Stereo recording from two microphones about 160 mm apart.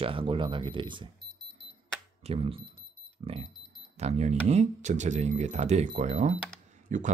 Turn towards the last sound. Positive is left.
turn(degrees=-50)  # may be behind; listen again after turning